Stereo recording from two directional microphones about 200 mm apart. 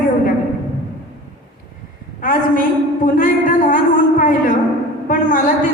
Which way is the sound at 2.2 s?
45° left (ahead or behind).